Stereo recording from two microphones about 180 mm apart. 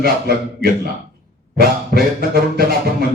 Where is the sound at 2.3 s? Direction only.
60° right (ahead or behind).